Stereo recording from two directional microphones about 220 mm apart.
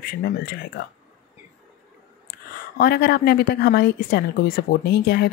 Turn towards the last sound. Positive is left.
turn(degrees=45)  # may be behind; listen again after turning